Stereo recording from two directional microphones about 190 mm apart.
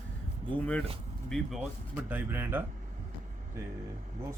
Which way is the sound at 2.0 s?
10° right (ahead or behind).